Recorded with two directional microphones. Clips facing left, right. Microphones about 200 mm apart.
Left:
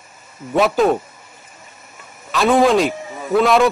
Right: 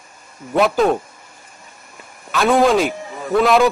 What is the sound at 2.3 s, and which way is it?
A man's voice, centre (ahead or behind).